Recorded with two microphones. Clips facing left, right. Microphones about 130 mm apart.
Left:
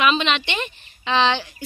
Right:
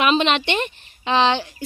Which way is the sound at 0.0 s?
45° right (ahead or behind).